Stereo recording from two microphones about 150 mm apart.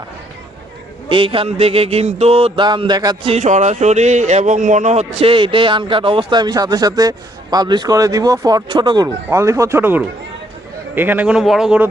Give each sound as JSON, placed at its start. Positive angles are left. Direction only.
{"t": 1.1, "sound": "speech", "side_deg": -35}
{"t": 3.2, "sound": "speech", "side_deg": -50}
{"t": 9.0, "sound": "speech", "side_deg": -20}